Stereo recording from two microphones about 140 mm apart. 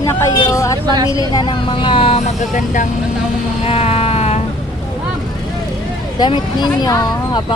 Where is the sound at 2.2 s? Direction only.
65° left (ahead or behind).